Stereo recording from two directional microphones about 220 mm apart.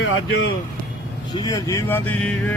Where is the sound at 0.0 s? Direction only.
65° left (ahead or behind).